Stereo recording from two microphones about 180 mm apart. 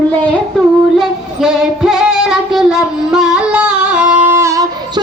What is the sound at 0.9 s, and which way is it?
Female singing, centre (ahead or behind).